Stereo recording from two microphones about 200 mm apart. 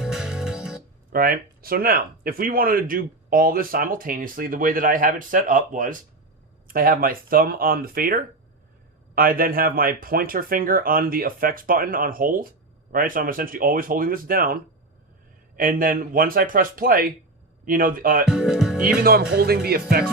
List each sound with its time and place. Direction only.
0.0 s music: 5° right (ahead or behind)
1.1 s speech: 45° right (ahead or behind)
18.3 s speech: 5° right (ahead or behind)
19.0 s speech: 55° right (ahead or behind)